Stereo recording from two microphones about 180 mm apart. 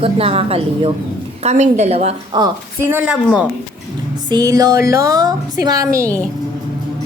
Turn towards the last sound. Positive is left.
turn(degrees=-15)  # may be behind; listen again after turning